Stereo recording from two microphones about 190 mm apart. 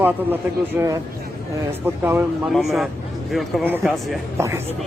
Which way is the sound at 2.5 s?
Centre (ahead or behind).